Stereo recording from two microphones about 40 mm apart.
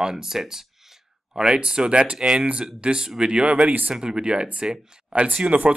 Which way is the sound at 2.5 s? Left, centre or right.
Right.